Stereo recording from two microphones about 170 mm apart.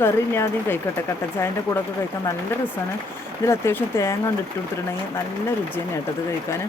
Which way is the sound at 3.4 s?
15° left (ahead or behind).